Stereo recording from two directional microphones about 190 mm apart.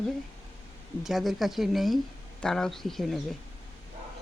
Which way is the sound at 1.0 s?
Centre (ahead or behind).